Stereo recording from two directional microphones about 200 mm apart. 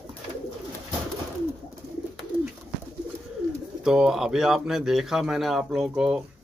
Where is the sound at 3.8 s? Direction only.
5° right (ahead or behind).